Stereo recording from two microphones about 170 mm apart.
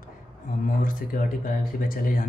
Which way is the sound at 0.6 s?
55° left (ahead or behind).